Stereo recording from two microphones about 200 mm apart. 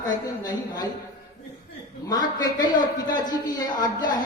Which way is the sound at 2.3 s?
20° left (ahead or behind).